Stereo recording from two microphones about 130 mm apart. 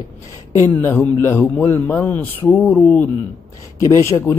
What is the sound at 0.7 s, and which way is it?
A man's voice, 15° left (ahead or behind).